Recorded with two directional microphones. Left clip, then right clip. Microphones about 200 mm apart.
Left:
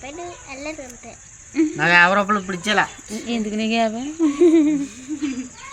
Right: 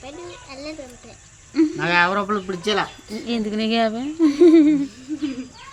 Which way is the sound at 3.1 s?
5° right (ahead or behind).